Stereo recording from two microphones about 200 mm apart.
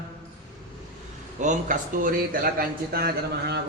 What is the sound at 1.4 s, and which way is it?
A man's voice, 40° right (ahead or behind).